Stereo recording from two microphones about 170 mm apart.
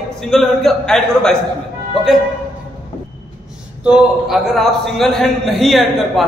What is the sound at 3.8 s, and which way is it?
A man's voice, 5° right (ahead or behind).